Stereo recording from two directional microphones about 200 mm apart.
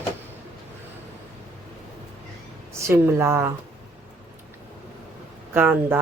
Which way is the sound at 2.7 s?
15° right (ahead or behind).